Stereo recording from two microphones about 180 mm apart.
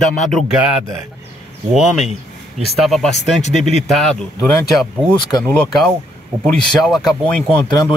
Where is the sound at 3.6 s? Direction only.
Centre (ahead or behind).